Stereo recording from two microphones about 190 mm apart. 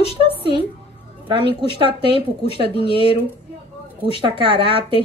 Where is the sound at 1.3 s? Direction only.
25° right (ahead or behind).